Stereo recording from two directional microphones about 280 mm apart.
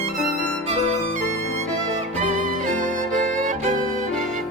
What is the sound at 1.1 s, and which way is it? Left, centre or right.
Violin, left.